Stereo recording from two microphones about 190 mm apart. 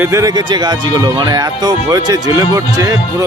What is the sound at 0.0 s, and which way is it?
Speech, 15° right (ahead or behind).